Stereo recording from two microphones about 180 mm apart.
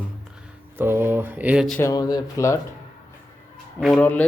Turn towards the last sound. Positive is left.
turn(degrees=10)  # may be behind; listen again after turning